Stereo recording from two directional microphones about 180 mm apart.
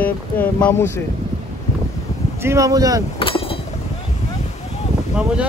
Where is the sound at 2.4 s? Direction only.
15° right (ahead or behind).